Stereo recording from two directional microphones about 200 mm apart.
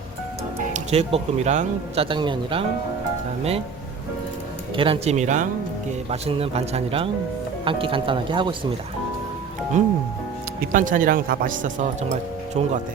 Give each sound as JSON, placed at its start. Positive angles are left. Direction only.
{"t": 0.7, "sound": "speech", "side_deg": -30}
{"t": 4.8, "sound": "speech", "side_deg": -30}
{"t": 9.8, "sound": "speech", "side_deg": -35}